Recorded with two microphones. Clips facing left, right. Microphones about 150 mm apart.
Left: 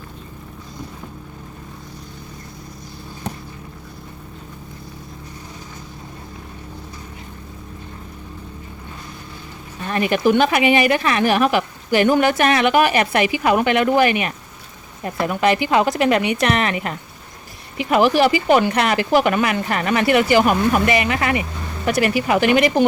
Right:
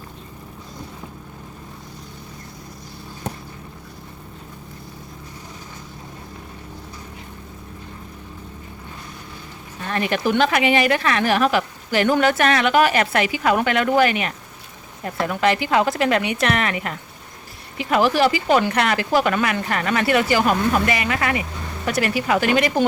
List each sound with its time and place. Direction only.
9.9 s speech: 15° left (ahead or behind)